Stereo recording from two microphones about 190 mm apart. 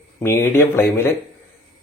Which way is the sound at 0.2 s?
10° left (ahead or behind).